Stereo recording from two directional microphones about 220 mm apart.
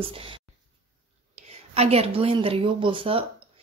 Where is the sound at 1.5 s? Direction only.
30° right (ahead or behind).